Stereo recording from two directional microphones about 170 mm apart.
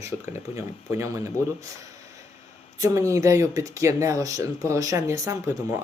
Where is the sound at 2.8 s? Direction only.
20° right (ahead or behind).